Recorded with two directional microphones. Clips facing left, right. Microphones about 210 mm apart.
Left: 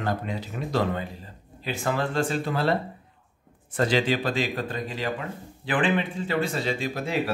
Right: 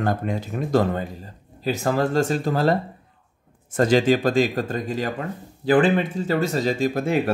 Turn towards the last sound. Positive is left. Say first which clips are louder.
# right 6 dB
turn(degrees=-50)  # may be behind; listen again after turning